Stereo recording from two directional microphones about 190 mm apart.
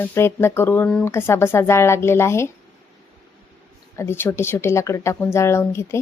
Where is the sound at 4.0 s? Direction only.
10° left (ahead or behind).